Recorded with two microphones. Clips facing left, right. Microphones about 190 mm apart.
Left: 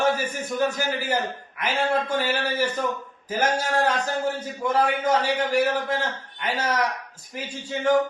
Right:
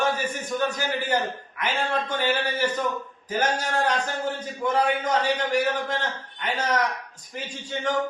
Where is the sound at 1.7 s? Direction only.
10° left (ahead or behind).